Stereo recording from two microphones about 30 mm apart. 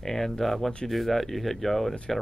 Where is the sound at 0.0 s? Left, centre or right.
Centre.